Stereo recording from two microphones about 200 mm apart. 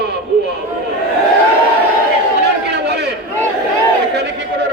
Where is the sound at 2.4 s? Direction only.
55° right (ahead or behind).